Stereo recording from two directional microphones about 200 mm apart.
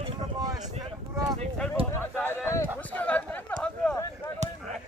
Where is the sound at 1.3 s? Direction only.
5° left (ahead or behind).